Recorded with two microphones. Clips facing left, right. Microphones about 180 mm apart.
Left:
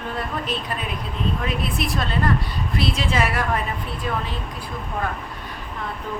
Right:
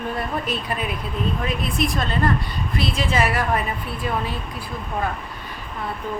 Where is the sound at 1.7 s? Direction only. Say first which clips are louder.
Right 2 dB; centre (ahead or behind).